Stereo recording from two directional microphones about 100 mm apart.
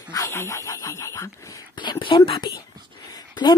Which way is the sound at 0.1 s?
30° left (ahead or behind).